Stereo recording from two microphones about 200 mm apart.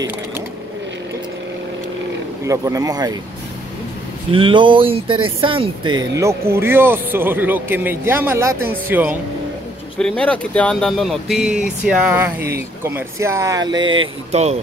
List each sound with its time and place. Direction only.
2.4 s speech: 15° right (ahead or behind)
4.3 s speech: 25° right (ahead or behind); by 9.2 s 10° right (ahead or behind)
9.9 s speech: 5° left (ahead or behind); by 14.6 s 30° right (ahead or behind)